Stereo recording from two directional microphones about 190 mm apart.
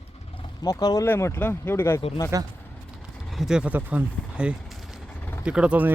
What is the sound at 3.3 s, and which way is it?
Speech, 5° right (ahead or behind).